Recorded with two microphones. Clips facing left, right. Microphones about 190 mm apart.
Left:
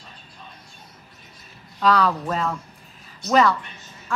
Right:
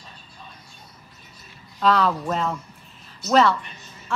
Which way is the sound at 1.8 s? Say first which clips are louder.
Even; centre (ahead or behind).